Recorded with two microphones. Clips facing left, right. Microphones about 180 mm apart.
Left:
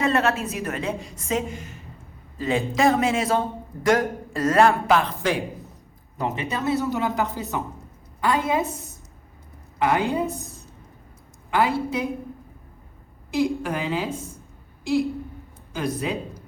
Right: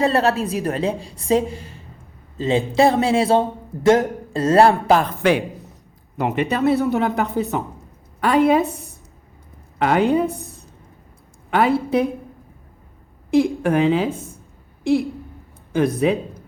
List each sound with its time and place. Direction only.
0.0 s a woman's voice: 35° right (ahead or behind)
6.1 s speech: 65° right (ahead or behind)
13.3 s speech: 55° right (ahead or behind)
15.7 s speech: 60° right (ahead or behind)